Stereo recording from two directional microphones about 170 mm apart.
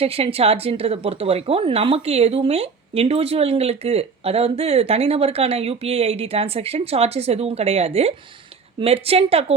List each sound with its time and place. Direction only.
0.0 s speech: 35° right (ahead or behind)